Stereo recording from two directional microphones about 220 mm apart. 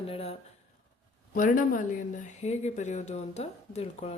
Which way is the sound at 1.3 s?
35° left (ahead or behind).